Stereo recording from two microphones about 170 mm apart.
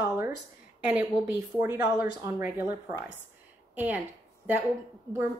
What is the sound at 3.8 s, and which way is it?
Speech, 10° right (ahead or behind).